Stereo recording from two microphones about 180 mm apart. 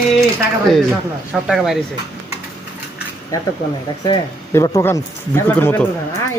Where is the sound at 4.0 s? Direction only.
20° left (ahead or behind).